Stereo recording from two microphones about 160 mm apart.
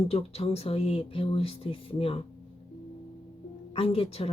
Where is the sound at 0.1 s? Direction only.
40° left (ahead or behind).